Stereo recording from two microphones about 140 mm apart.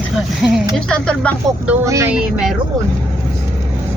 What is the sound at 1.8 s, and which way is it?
Speech, 20° right (ahead or behind).